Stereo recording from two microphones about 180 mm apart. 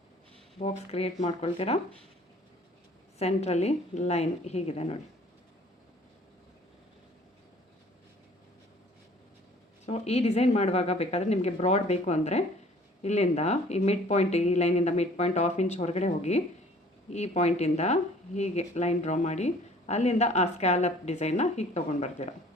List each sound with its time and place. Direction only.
0.6 s speech: 35° left (ahead or behind)
3.2 s speech: 35° left (ahead or behind)
9.8 s speech: 35° left (ahead or behind)